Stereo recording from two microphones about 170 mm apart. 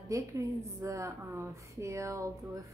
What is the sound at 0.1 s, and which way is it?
A woman's voice, 20° right (ahead or behind).